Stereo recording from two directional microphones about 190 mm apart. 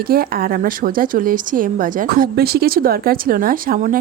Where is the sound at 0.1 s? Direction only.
50° right (ahead or behind).